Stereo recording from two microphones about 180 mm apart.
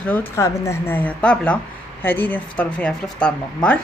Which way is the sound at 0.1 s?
10° left (ahead or behind).